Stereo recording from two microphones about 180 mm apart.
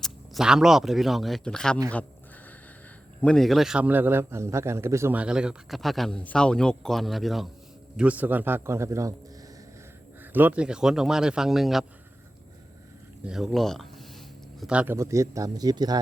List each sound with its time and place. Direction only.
0.0 s a man's voice: centre (ahead or behind)
3.2 s a man's voice: 5° left (ahead or behind); by 9.1 s 15° right (ahead or behind)
10.3 s a man's voice: 10° right (ahead or behind)
13.2 s a man's voice: centre (ahead or behind)
14.9 s speech: 15° right (ahead or behind)